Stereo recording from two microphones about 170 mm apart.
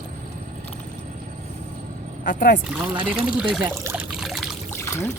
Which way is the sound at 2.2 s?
55° left (ahead or behind).